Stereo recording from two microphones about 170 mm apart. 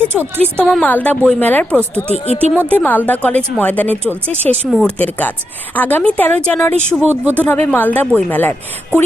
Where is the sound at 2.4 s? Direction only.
10° left (ahead or behind).